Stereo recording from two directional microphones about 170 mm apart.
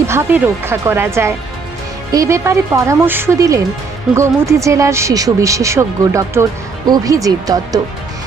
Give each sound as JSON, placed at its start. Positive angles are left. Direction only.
{"t": 0.1, "sound": "speech", "side_deg": -15}